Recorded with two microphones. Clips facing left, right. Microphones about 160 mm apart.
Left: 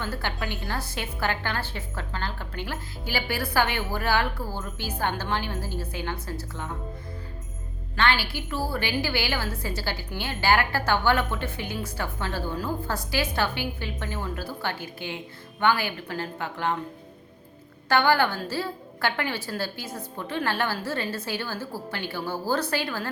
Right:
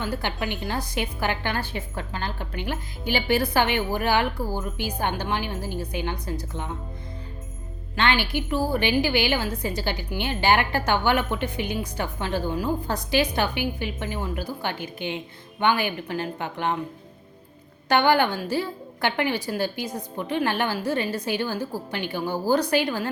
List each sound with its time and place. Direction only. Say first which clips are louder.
0.0 s a woman's voice: right 3 dB; 15° right (ahead or behind)
7.9 s a woman's voice: right 2 dB; 20° right (ahead or behind)
17.8 s a woman's voice: right 2 dB; 20° right (ahead or behind)